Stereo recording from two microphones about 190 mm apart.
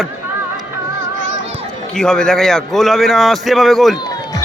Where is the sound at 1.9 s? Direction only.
5° left (ahead or behind).